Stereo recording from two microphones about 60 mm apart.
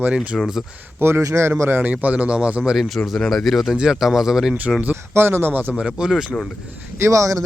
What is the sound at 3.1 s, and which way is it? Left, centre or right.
Speech, centre.